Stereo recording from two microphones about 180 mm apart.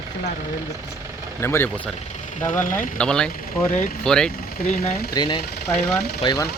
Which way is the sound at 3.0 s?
5° left (ahead or behind).